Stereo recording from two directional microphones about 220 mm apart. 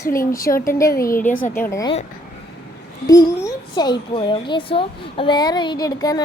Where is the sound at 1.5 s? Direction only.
10° left (ahead or behind).